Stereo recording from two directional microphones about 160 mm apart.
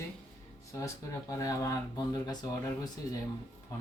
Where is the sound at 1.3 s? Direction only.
20° left (ahead or behind).